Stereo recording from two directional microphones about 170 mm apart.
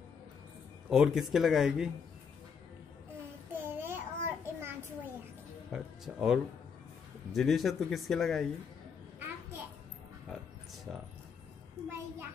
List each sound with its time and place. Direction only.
0.8 s speech: 5° right (ahead or behind)
3.5 s a sound: 10° right (ahead or behind)
5.7 s music: 5° right (ahead or behind)
7.3 s speech: centre (ahead or behind)
10.9 s music: 5° right (ahead or behind)